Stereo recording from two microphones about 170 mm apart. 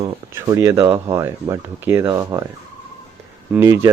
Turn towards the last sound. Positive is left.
turn(degrees=-15)  # may be behind; listen again after turning